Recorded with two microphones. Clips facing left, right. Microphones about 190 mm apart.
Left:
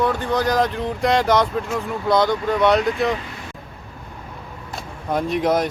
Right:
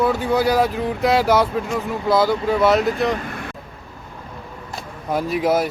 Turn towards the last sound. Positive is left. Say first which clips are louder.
# even
turn(degrees=-5)  # may be behind; listen again after turning